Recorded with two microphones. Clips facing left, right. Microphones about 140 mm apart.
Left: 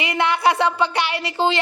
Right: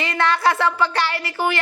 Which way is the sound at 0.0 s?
15° left (ahead or behind).